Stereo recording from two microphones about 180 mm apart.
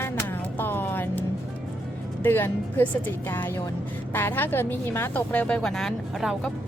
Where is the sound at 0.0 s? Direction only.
10° left (ahead or behind).